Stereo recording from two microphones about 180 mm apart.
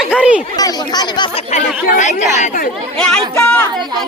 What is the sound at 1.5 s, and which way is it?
Speech, 40° left (ahead or behind).